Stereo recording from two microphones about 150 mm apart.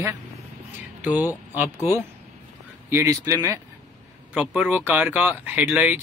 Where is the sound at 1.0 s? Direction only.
10° right (ahead or behind).